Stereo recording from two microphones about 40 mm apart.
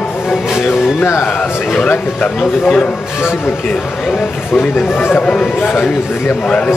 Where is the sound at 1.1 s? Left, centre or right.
Left.